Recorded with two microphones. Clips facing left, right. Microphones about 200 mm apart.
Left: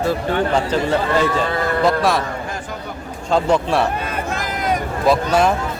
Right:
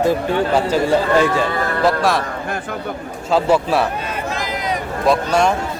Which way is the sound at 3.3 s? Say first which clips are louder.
Right 1 dB; 5° right (ahead or behind).